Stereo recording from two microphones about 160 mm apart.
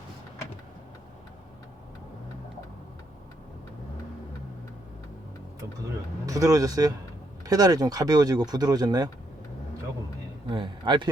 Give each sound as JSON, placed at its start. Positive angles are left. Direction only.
{"t": 6.2, "sound": "speech", "side_deg": -20}
{"t": 10.5, "sound": "a man's voice", "side_deg": -30}